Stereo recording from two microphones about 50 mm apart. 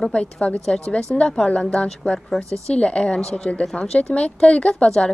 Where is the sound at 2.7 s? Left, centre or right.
Left.